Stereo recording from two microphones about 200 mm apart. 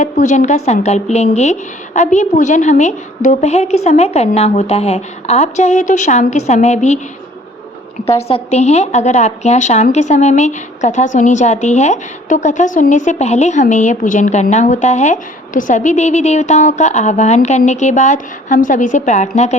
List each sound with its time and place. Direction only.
0.0 s a woman's voice: 35° left (ahead or behind)
8.0 s a woman's voice: 30° left (ahead or behind)